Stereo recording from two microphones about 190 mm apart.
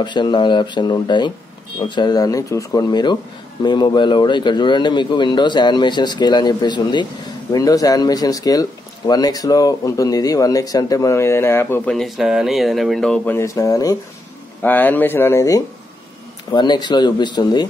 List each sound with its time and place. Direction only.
0.0 s a man's voice: 25° left (ahead or behind)